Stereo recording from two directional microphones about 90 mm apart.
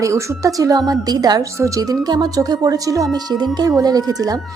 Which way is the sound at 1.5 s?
35° right (ahead or behind).